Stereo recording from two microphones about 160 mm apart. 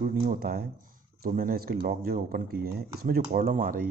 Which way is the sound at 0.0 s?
60° right (ahead or behind).